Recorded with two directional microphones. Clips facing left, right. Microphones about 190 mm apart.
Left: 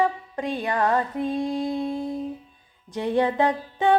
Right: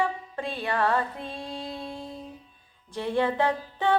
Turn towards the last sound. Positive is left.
turn(degrees=15)  # may be behind; listen again after turning